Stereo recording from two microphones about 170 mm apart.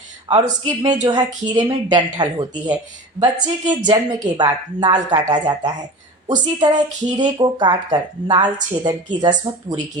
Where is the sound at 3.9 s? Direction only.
25° right (ahead or behind).